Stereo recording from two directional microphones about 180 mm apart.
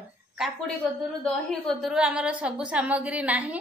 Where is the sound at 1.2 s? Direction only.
5° left (ahead or behind).